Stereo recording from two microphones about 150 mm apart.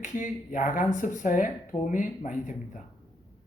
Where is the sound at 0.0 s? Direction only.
60° left (ahead or behind).